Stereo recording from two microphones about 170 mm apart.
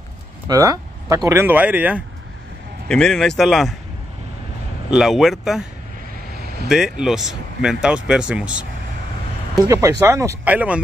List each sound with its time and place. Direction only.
0.5 s speech: 20° right (ahead or behind)
2.9 s speech: 5° left (ahead or behind)
4.9 s speech: centre (ahead or behind)
6.7 s speech: 5° right (ahead or behind)
9.7 s speech: 20° right (ahead or behind)